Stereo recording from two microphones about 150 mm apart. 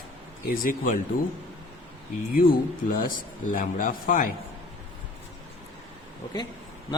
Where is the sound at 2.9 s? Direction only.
70° left (ahead or behind).